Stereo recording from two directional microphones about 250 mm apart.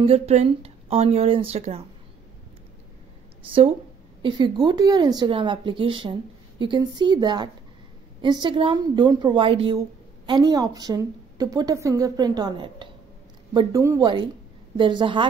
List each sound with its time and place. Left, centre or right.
0.0 s speech: right
4.2 s a woman's voice: centre